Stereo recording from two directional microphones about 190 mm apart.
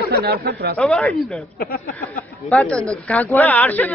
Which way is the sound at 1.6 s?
55° left (ahead or behind).